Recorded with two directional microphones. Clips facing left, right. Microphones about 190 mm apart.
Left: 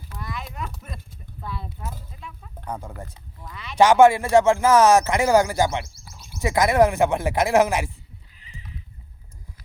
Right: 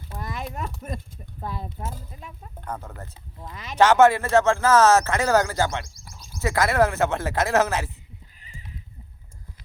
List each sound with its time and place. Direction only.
0.2 s a sound: 45° right (ahead or behind)
1.4 s speech: 45° right (ahead or behind)
2.6 s speech: 10° left (ahead or behind)
3.5 s a sound: 45° right (ahead or behind)
3.8 s speech: 10° left (ahead or behind)
8.4 s horse: 45° right (ahead or behind)